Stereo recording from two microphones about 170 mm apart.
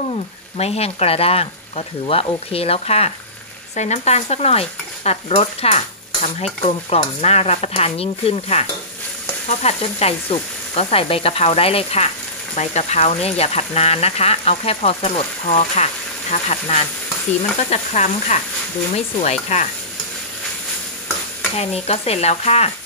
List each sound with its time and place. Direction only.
0.6 s speech: 35° left (ahead or behind)
19.5 s speech: 40° left (ahead or behind)
21.5 s speech: 35° left (ahead or behind)